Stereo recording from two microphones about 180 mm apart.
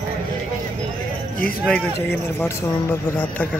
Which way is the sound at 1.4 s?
50° left (ahead or behind).